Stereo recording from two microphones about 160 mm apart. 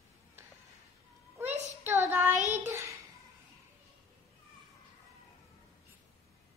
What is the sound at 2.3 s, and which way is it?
Child singing, 45° right (ahead or behind).